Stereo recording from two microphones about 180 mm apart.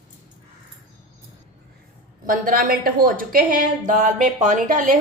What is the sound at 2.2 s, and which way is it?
A woman's voice, 50° right (ahead or behind).